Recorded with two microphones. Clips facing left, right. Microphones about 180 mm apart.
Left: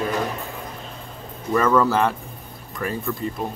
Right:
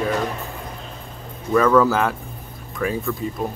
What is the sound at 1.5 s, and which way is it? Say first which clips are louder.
Speech: right 3 dB; centre (ahead or behind).